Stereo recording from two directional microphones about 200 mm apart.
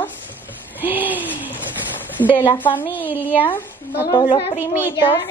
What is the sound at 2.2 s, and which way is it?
A woman's voice, 10° left (ahead or behind).